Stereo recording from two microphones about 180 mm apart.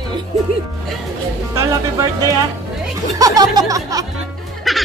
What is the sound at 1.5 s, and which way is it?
Music, 15° right (ahead or behind).